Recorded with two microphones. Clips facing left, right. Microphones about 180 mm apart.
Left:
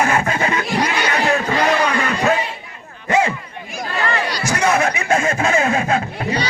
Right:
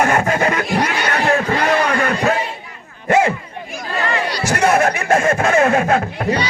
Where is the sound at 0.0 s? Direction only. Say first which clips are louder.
Right 2 dB; 50° right (ahead or behind).